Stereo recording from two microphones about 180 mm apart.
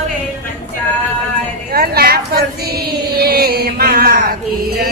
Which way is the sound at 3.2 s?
60° right (ahead or behind).